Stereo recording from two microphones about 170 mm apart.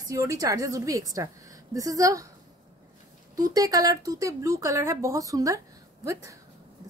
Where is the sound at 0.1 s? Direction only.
20° right (ahead or behind).